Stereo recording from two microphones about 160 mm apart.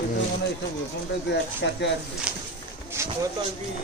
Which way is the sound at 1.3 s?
90° left.